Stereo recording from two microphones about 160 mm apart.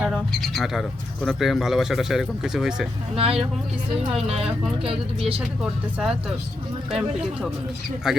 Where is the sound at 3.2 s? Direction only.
35° right (ahead or behind).